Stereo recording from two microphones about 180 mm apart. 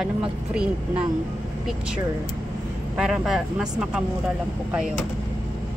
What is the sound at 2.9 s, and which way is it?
Speech, 5° right (ahead or behind).